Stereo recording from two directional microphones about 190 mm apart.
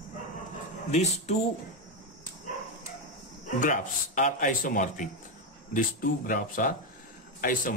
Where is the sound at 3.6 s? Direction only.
45° left (ahead or behind).